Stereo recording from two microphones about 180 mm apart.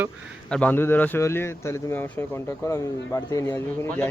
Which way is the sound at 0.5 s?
10° left (ahead or behind).